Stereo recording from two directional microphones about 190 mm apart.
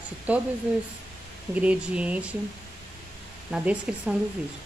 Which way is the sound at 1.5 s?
5° right (ahead or behind).